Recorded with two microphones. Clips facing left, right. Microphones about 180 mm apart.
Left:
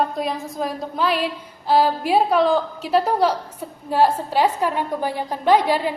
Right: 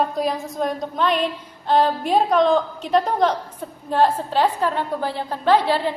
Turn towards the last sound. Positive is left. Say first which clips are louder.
# left 1 dB
turn(degrees=10)  # may be behind; listen again after turning